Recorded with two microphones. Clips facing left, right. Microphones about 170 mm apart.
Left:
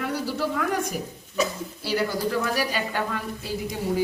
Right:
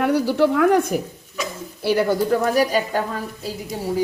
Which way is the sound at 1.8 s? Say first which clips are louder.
Right 7 dB; 55° right (ahead or behind).